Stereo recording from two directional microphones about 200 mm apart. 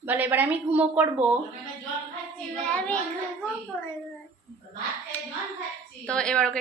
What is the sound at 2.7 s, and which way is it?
Speech, 5° left (ahead or behind).